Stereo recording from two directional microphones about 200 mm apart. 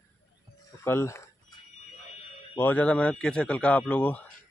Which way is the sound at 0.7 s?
15° left (ahead or behind).